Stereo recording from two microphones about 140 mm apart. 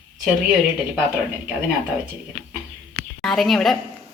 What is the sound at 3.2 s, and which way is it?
Speech, centre (ahead or behind).